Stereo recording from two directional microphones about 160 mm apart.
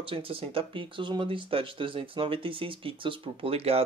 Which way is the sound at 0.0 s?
35° right (ahead or behind).